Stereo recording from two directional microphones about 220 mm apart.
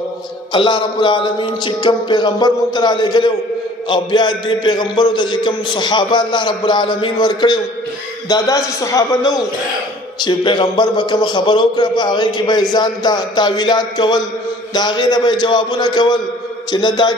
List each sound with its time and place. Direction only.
0.5 s a man's voice: 20° left (ahead or behind)